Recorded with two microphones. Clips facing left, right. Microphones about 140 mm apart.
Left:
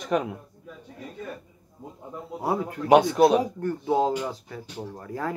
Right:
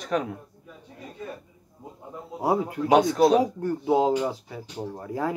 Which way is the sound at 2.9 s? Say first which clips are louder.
Left 1 dB; 10° left (ahead or behind).